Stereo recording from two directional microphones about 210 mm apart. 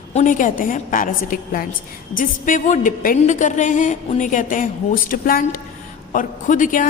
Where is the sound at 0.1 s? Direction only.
35° left (ahead or behind).